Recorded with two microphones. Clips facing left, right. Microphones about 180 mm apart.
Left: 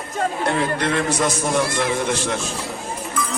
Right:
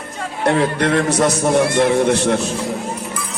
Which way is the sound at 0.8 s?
65° right (ahead or behind).